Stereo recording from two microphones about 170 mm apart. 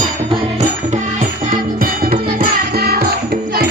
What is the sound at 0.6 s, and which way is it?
Music, 45° right (ahead or behind).